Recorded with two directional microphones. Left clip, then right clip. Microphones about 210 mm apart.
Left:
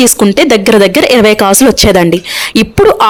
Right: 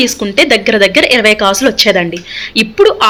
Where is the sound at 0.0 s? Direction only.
55° left (ahead or behind).